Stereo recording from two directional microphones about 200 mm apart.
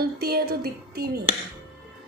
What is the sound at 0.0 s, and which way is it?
Speech, 50° right (ahead or behind).